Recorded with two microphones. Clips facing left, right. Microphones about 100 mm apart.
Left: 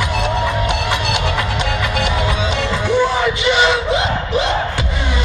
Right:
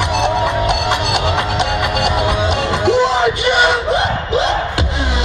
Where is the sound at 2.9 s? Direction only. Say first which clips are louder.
Right 2 dB; 25° right (ahead or behind).